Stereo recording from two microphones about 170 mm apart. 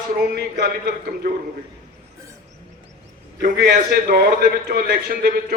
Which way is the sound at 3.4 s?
60° right (ahead or behind).